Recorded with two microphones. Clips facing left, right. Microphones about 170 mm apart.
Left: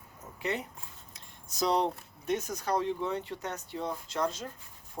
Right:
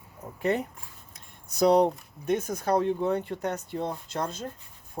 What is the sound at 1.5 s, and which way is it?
Speech, 55° right (ahead or behind).